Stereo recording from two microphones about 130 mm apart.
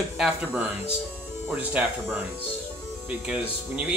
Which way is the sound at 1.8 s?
10° right (ahead or behind).